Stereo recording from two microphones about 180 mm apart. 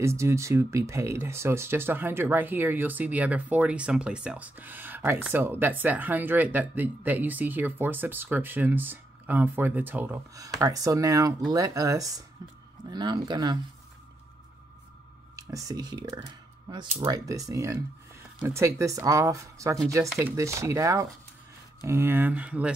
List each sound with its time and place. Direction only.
0.0 s speech: 15° right (ahead or behind)
15.3 s speech: 20° right (ahead or behind)